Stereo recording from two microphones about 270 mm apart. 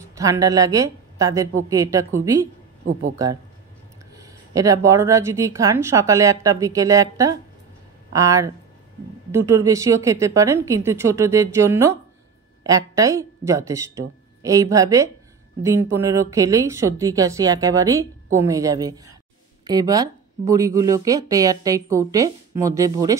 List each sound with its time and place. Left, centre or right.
0.1 s a woman's voice: centre
2.9 s speech: right
4.2 s speech: centre